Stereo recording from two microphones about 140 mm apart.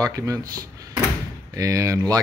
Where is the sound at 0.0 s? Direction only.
25° right (ahead or behind).